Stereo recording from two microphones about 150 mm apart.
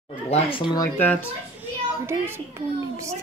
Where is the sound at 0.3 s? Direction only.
40° left (ahead or behind).